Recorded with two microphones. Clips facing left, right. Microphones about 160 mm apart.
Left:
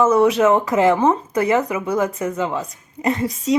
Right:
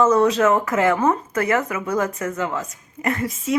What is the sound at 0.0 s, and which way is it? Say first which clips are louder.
Speech: left 2 dB; 10° left (ahead or behind).